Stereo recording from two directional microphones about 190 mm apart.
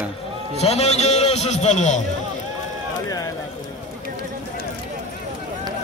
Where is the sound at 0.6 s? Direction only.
35° left (ahead or behind).